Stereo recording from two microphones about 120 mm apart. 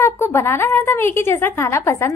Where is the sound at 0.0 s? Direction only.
20° left (ahead or behind).